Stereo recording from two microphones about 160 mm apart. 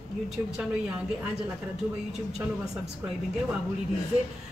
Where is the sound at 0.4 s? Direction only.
10° right (ahead or behind).